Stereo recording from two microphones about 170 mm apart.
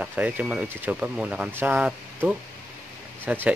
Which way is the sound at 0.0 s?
10° right (ahead or behind).